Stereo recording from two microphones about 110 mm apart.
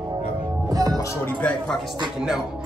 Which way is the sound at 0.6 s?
35° right (ahead or behind).